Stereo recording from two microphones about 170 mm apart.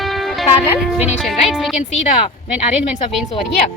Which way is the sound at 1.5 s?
Centre (ahead or behind).